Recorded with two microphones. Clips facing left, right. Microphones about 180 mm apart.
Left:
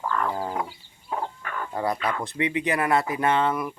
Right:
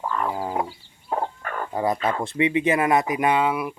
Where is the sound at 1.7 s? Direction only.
20° right (ahead or behind).